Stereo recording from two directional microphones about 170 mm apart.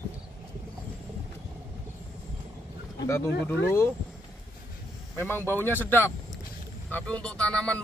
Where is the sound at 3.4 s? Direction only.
15° left (ahead or behind).